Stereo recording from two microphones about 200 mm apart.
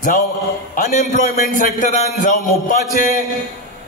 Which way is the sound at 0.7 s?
40° left (ahead or behind).